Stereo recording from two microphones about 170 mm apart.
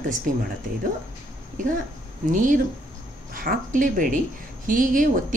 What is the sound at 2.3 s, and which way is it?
Speech, 50° right (ahead or behind).